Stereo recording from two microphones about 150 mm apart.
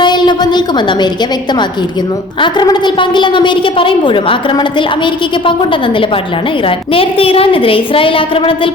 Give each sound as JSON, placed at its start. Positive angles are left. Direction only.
{"t": 0.0, "sound": "a woman's voice", "side_deg": 30}